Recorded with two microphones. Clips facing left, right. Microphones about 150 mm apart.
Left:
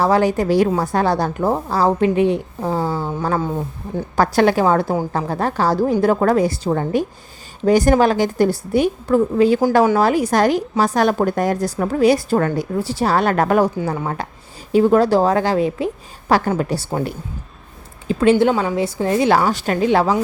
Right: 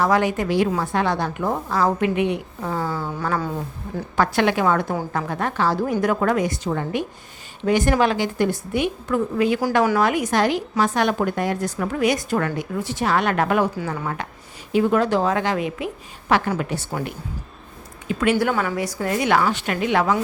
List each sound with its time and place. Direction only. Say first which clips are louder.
0.0 s a woman's voice: left 4 dB; 35° left (ahead or behind)
3.2 s a woman's voice: left 3 dB; 20° left (ahead or behind)
4.1 s a woman's voice: left 4 dB; 40° left (ahead or behind)